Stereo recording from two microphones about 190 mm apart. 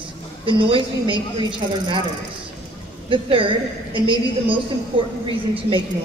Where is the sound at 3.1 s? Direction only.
25° right (ahead or behind).